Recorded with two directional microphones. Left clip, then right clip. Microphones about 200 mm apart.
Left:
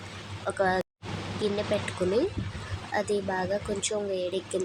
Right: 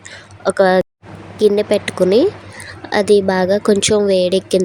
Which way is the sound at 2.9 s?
45° right (ahead or behind).